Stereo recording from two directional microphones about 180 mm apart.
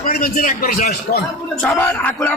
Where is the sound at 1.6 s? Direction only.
10° left (ahead or behind).